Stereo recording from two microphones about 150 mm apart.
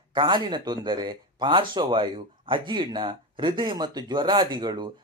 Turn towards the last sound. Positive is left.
turn(degrees=-30)  # may be behind; listen again after turning